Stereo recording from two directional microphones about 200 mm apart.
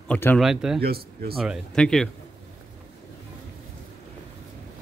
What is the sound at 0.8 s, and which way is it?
Speech, 50° right (ahead or behind).